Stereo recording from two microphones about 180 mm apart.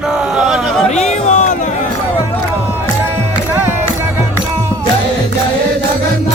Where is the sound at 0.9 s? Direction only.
40° left (ahead or behind).